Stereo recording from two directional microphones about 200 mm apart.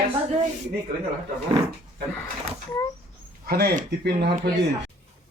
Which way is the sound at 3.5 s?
50° right (ahead or behind).